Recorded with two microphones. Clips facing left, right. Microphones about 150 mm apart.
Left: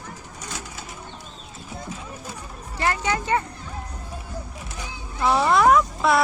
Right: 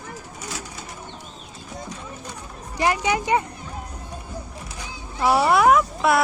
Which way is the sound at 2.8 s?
15° right (ahead or behind).